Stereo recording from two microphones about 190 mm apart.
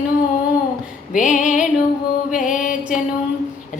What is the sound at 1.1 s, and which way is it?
Female singing, 40° left (ahead or behind).